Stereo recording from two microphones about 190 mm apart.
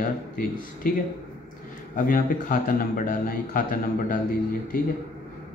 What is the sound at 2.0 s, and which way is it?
Speech, 45° left (ahead or behind).